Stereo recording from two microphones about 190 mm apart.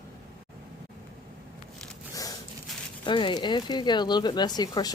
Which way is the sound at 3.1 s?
25° left (ahead or behind).